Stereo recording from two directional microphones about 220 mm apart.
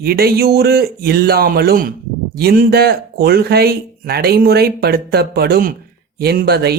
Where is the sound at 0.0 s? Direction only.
45° right (ahead or behind).